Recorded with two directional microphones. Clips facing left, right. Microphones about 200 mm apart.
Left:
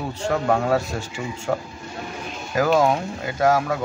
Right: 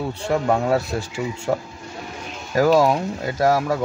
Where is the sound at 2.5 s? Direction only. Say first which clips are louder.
Right 2 dB; 35° right (ahead or behind).